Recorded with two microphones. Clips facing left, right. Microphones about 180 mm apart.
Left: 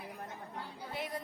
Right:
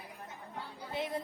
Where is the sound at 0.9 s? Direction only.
25° right (ahead or behind).